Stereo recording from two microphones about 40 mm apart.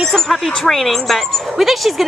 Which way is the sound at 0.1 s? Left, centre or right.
Centre.